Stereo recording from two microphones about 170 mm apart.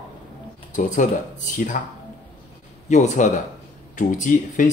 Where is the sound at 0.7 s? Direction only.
50° left (ahead or behind).